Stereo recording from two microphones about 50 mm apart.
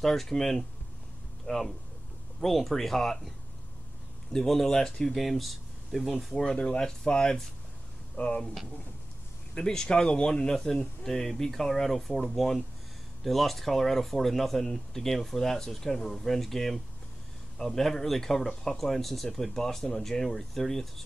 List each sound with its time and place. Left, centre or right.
0.0 s speech: centre
6.4 s speech: centre
8.2 s speech: left
9.6 s speech: centre